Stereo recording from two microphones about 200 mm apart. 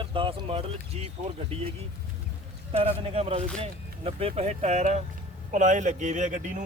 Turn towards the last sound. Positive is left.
turn(degrees=-40)  # may be behind; listen again after turning